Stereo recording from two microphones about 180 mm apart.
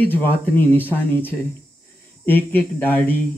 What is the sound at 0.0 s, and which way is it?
Speech, 10° left (ahead or behind).